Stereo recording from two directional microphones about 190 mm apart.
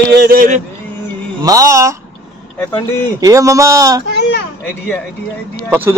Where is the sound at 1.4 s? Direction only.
20° right (ahead or behind).